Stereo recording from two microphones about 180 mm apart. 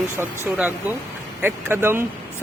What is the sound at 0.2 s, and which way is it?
Speech, 10° right (ahead or behind).